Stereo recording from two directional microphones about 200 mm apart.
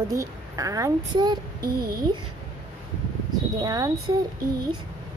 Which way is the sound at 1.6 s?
50° right (ahead or behind).